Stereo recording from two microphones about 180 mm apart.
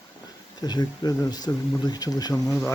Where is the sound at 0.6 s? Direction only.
20° left (ahead or behind).